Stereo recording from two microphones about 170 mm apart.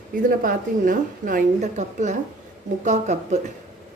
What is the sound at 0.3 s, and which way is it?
Speech, 55° right (ahead or behind).